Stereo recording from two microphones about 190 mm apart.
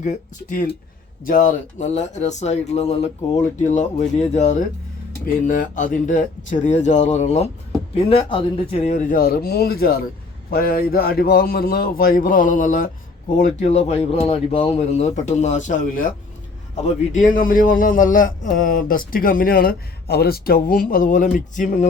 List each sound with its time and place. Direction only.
0.0 s a man's voice: 45° left (ahead or behind)
5.5 s a man's voice: 45° left (ahead or behind)
17.1 s a man's voice: 40° left (ahead or behind)